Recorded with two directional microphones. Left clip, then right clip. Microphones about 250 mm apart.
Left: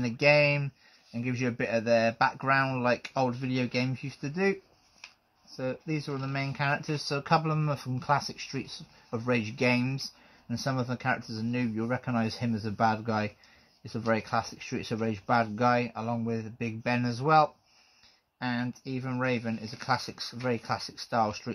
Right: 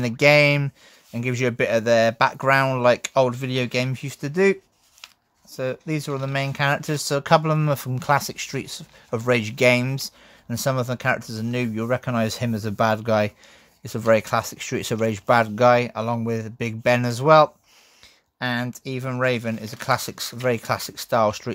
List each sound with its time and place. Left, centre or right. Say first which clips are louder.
0.0 s speech: right 7 dB; right
5.6 s speech: right 7 dB; right